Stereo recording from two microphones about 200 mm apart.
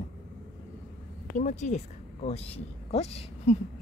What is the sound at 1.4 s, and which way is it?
A woman's voice, 35° left (ahead or behind).